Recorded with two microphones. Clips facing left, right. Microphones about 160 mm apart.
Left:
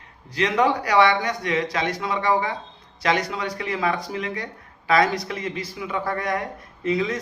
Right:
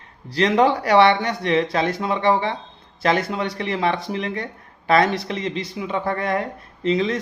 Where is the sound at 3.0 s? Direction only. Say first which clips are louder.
Right 3 dB; 45° right (ahead or behind).